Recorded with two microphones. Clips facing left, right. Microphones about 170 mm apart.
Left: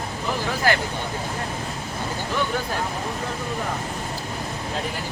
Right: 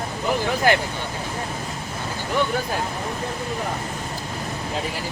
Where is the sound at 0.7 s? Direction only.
20° right (ahead or behind).